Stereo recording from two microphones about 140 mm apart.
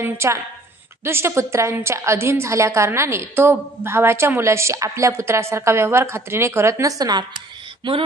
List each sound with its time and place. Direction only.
0.0 s a woman's voice: 20° right (ahead or behind)